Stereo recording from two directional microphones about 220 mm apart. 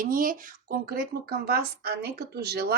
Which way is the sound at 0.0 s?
40° right (ahead or behind).